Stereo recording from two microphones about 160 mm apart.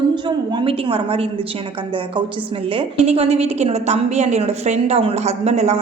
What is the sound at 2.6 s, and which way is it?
A woman's voice, 40° right (ahead or behind).